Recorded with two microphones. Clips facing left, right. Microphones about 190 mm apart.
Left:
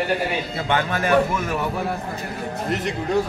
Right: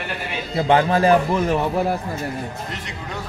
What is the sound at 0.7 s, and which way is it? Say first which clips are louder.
A man's voice: right 4 dB; 30° right (ahead or behind).